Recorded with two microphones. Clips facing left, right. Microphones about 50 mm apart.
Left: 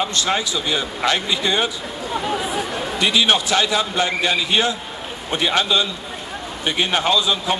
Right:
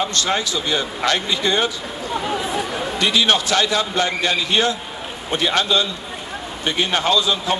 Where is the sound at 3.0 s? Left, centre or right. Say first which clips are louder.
Even; centre.